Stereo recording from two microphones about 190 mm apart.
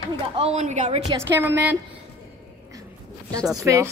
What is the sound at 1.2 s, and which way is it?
Speech, 15° right (ahead or behind).